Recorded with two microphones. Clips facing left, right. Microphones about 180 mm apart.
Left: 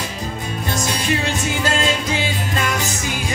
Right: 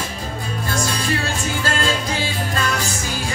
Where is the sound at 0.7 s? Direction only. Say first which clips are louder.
Left 1 dB; 20° left (ahead or behind).